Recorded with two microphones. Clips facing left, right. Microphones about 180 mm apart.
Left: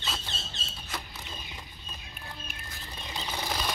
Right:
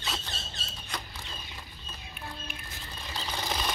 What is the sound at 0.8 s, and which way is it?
Rodents, 5° left (ahead or behind).